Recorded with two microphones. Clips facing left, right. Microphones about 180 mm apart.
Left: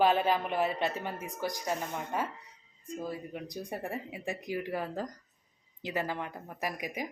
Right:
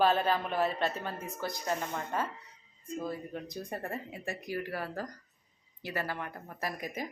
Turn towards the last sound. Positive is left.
turn(degrees=15)  # may be behind; listen again after turning